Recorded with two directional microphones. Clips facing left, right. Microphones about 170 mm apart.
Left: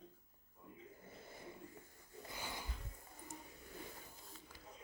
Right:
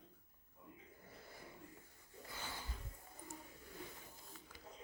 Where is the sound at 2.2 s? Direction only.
15° left (ahead or behind).